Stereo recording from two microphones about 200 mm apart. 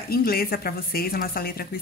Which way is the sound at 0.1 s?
50° left (ahead or behind).